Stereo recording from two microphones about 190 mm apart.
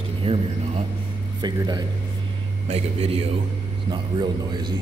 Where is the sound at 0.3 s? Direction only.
30° right (ahead or behind).